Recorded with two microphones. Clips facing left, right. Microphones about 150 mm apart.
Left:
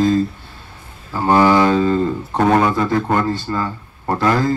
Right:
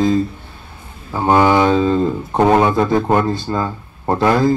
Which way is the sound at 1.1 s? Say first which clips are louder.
Even; 20° right (ahead or behind).